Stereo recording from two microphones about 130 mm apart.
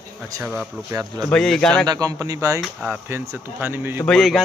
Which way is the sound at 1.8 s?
30° right (ahead or behind).